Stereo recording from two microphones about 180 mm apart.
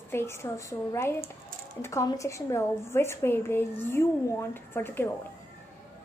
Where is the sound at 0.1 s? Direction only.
15° left (ahead or behind).